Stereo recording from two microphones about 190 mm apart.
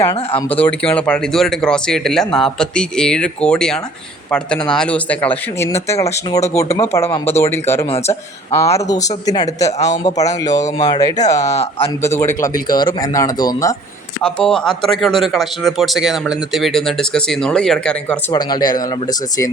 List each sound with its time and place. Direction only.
0.3 s speech: 30° left (ahead or behind)
0.6 s speech: 5° left (ahead or behind)
7.9 s a man's voice: 30° left (ahead or behind)
8.5 s speech: 15° left (ahead or behind)
12.6 s speech: 20° left (ahead or behind)
14.3 s speech: 5° left (ahead or behind)
18.3 s speech: 20° left (ahead or behind)